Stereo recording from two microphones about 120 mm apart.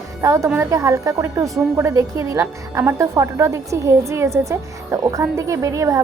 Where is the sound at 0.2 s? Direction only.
25° right (ahead or behind).